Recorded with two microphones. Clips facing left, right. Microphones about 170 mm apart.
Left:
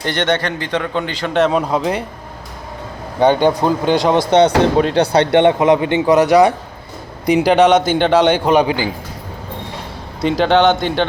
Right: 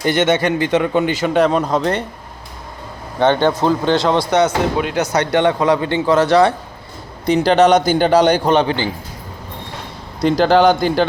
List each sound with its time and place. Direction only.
0.0 s speech: 10° right (ahead or behind)
3.2 s speech: 10° left (ahead or behind)
4.3 s a man's voice: 30° left (ahead or behind); by 8.9 s 10° left (ahead or behind)
10.2 s a man's voice: centre (ahead or behind)